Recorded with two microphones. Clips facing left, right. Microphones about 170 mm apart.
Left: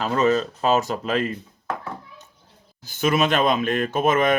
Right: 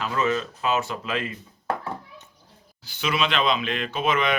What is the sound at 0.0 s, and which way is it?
Speech, 40° left (ahead or behind).